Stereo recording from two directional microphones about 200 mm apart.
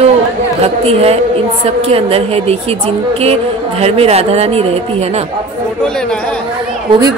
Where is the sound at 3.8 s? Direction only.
30° right (ahead or behind).